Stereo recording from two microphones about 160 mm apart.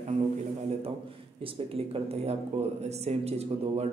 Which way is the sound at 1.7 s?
40° right (ahead or behind).